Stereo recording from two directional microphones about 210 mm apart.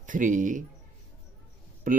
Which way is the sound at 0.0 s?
40° right (ahead or behind).